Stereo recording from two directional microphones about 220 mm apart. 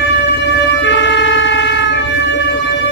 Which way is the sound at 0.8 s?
55° left (ahead or behind).